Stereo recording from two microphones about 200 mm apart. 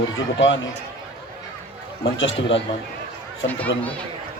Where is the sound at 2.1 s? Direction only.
70° left (ahead or behind).